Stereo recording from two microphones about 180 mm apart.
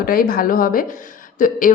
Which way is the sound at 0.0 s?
55° left (ahead or behind).